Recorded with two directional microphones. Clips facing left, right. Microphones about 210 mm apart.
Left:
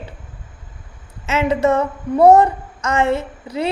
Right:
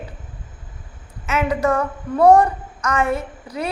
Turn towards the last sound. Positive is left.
turn(degrees=25)  # may be behind; listen again after turning